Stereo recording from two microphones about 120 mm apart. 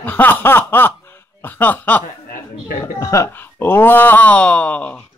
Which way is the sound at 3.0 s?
25° left (ahead or behind).